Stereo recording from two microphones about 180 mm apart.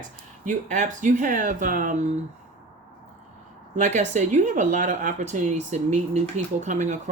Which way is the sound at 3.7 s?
40° right (ahead or behind).